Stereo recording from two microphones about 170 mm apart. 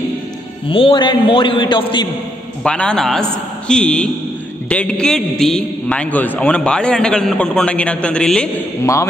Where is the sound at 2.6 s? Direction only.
5° left (ahead or behind).